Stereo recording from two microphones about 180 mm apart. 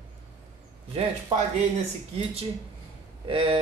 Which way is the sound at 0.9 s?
35° right (ahead or behind).